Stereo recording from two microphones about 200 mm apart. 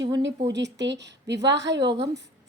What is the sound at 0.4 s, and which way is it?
A woman's voice, 60° right (ahead or behind).